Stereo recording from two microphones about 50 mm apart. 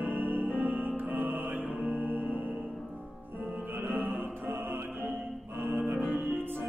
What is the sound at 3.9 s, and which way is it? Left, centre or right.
Music, right.